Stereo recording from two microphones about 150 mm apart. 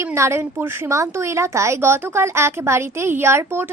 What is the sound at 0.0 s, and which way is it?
A woman's voice, 15° right (ahead or behind).